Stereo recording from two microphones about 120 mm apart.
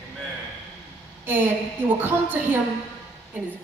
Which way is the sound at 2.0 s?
15° right (ahead or behind).